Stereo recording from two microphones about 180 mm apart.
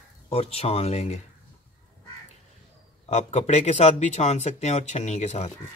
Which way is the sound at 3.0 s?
40° left (ahead or behind).